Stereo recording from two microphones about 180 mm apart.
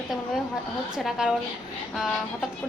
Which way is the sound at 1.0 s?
5° right (ahead or behind).